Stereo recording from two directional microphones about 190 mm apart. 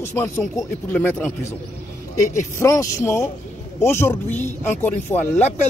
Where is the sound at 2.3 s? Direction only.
15° left (ahead or behind).